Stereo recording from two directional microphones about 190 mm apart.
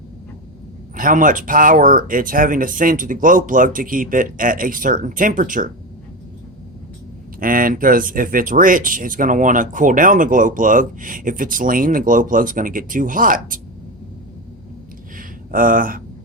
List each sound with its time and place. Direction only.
0.9 s speech: 45° right (ahead or behind)
7.3 s speech: 50° right (ahead or behind)
15.2 s a sound: 45° right (ahead or behind)